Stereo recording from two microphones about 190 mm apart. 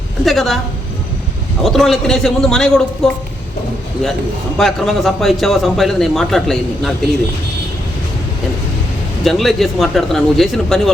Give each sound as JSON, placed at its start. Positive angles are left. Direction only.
{"t": 0.3, "sound": "a man's voice", "side_deg": 0}
{"t": 1.6, "sound": "a man's voice", "side_deg": 0}
{"t": 4.5, "sound": "a man's voice", "side_deg": 0}
{"t": 9.2, "sound": "a man's voice", "side_deg": 0}